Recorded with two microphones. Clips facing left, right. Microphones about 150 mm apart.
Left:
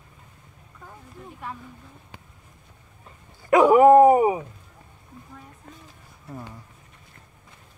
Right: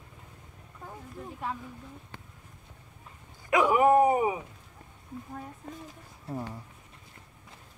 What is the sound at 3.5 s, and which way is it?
Dog, 40° left (ahead or behind).